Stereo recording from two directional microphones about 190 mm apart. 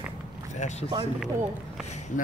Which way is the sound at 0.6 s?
40° left (ahead or behind).